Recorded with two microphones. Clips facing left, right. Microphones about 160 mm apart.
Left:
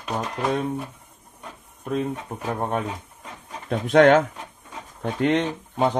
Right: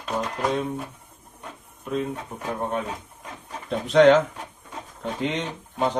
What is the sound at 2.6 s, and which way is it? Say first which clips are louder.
A man's voice: left 1 dB; 50° left (ahead or behind).